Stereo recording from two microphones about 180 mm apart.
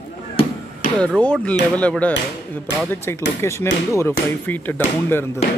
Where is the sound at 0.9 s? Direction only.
5° left (ahead or behind).